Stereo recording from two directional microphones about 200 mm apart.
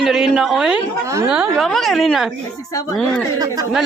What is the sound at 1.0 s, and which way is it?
Speech, 15° right (ahead or behind).